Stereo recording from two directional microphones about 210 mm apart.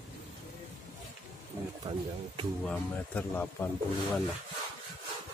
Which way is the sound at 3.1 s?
10° left (ahead or behind).